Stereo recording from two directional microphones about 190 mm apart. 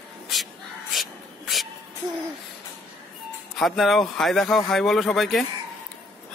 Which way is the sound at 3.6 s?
Centre (ahead or behind).